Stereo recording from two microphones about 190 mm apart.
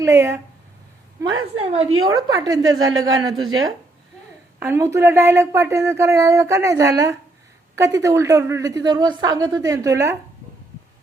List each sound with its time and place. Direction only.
0.0 s speech: 15° right (ahead or behind)
1.5 s a woman's voice: 30° right (ahead or behind)
2.0 s a woman's voice: 20° right (ahead or behind)
4.6 s speech: 15° right (ahead or behind)